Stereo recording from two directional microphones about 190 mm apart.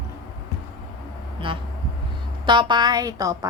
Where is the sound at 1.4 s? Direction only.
25° right (ahead or behind).